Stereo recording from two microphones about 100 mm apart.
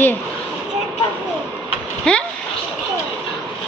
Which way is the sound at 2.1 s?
10° left (ahead or behind).